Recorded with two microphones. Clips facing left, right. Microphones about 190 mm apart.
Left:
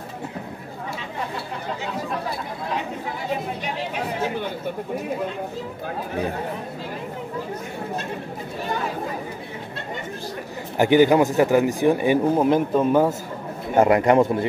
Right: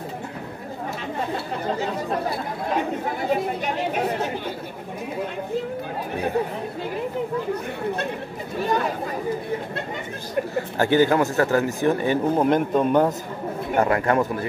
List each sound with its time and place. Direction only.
3.6 s speech: 50° right (ahead or behind)
10.8 s speech: 15° left (ahead or behind)
13.7 s speech: 20° left (ahead or behind)